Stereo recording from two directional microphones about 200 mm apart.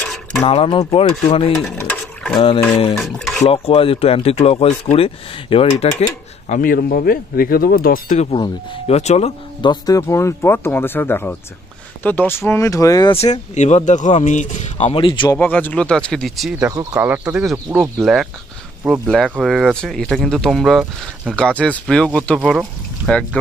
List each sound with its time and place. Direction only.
0.0 s a sound: centre (ahead or behind)
0.5 s speech: 25° left (ahead or behind)
1.8 s a sound: 10° left (ahead or behind)
2.3 s speech: 25° left (ahead or behind)
3.0 s speech: centre (ahead or behind)
3.4 s speech: 30° left (ahead or behind)
6.5 s speech: 45° left (ahead or behind)
8.3 s speech: 30° left (ahead or behind)
13.2 s a man's voice: 35° left (ahead or behind)
15.3 s speech: 10° left (ahead or behind)
16.5 s speech: 15° right (ahead or behind); by 23.2 s centre (ahead or behind)